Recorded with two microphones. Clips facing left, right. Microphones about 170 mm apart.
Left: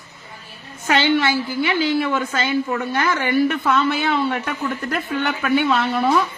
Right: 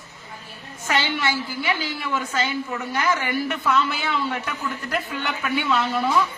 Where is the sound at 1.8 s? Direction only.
60° left (ahead or behind).